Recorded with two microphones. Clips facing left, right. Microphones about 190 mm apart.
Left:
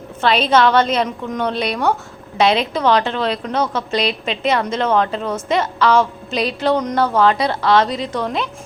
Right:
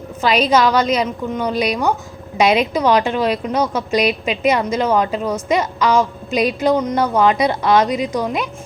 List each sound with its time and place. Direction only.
0.2 s a woman's voice: 10° right (ahead or behind)
2.4 s a woman's voice: 15° right (ahead or behind)